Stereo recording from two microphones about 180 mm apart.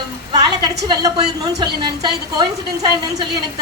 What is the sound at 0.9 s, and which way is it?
A woman's voice, 25° right (ahead or behind).